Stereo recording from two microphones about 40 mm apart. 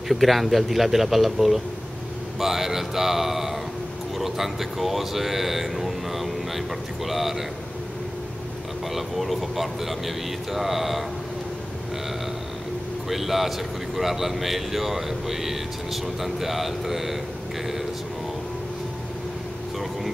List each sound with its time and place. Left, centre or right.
0.1 s speech: centre
8.9 s speech: centre
13.1 s speech: centre